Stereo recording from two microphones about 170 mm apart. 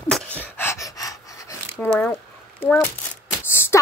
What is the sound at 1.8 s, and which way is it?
A woman's voice, 10° left (ahead or behind).